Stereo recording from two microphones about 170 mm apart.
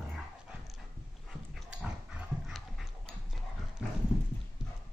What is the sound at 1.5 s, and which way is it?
Dog, 5° right (ahead or behind).